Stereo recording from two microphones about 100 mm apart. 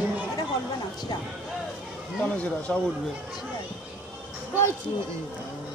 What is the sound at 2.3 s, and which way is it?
Speech, 15° left (ahead or behind).